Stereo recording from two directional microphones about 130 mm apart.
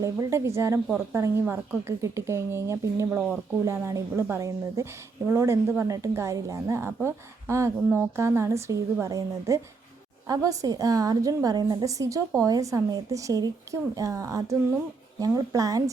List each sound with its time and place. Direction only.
0.0 s a woman's voice: 20° right (ahead or behind)